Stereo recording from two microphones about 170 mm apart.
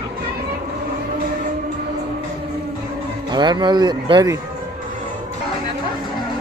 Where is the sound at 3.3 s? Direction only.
25° right (ahead or behind).